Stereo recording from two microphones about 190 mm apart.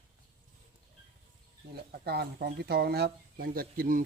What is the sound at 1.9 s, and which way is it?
Speech, 55° right (ahead or behind).